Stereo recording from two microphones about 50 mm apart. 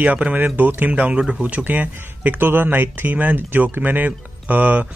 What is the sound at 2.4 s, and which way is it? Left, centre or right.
Speech, right.